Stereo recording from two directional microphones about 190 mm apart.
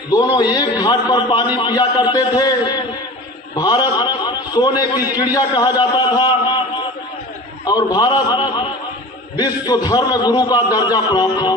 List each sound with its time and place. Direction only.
0.3 s a man's voice: 20° left (ahead or behind)